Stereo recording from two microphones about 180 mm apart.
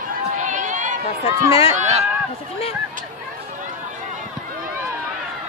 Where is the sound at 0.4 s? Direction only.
45° right (ahead or behind).